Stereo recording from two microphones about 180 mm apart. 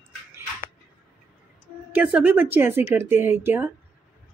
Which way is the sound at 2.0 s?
10° right (ahead or behind).